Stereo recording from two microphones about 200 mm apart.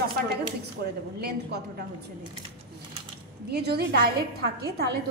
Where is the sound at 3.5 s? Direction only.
55° right (ahead or behind).